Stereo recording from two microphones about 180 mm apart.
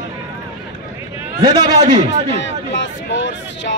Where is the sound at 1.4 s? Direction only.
25° right (ahead or behind).